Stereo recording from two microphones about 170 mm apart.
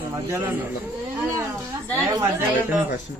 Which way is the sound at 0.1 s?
15° right (ahead or behind).